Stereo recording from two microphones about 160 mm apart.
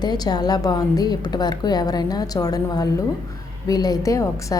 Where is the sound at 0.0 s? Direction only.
25° left (ahead or behind).